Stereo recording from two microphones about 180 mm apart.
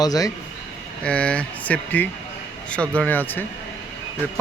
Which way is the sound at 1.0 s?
5° left (ahead or behind).